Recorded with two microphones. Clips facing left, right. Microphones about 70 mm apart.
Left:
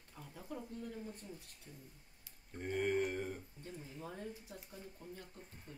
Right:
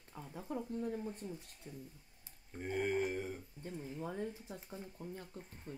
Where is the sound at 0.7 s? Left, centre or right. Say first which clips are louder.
Right 6 dB; right.